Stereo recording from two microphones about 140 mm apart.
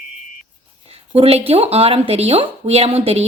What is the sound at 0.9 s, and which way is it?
Speech, 45° right (ahead or behind).